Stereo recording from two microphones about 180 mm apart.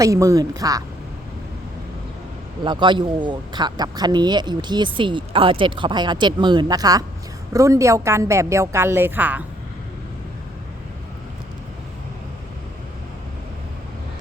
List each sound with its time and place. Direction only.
0.0 s speech: 20° right (ahead or behind)
2.6 s a woman's voice: 25° right (ahead or behind); by 9.4 s 10° right (ahead or behind)